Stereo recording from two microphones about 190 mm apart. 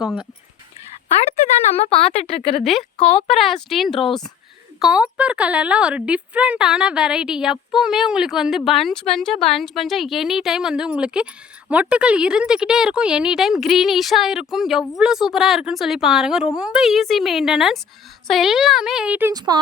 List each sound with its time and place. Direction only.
0.0 s speech: 5° right (ahead or behind)
1.0 s speech: 30° left (ahead or behind)
3.2 s speech: centre (ahead or behind)
19.5 s speech: 20° right (ahead or behind)